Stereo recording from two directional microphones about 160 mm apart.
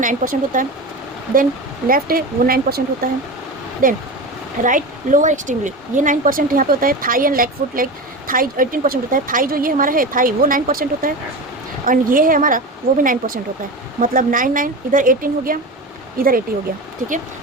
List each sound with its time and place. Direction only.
0.0 s a woman's voice: 55° right (ahead or behind)
1.9 s a woman's voice: 65° right (ahead or behind)